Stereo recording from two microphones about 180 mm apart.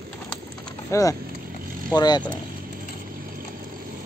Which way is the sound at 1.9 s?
20° left (ahead or behind).